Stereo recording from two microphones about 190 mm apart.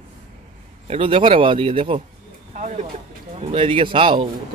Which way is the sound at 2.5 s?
40° right (ahead or behind).